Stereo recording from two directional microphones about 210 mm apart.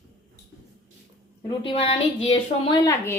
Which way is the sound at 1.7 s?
25° left (ahead or behind).